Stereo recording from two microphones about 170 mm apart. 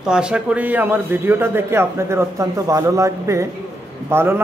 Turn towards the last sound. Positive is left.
turn(degrees=-15)  # may be behind; listen again after turning